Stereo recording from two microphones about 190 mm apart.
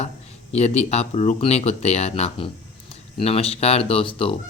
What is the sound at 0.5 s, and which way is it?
A man's voice, 35° left (ahead or behind).